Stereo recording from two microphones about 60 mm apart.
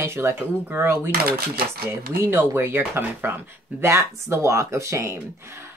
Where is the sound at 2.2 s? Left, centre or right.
Right.